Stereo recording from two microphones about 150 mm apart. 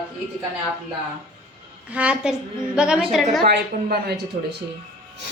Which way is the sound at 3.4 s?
90° right.